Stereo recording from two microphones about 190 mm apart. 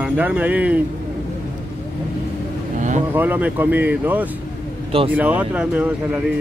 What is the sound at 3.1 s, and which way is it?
Speech, 10° right (ahead or behind).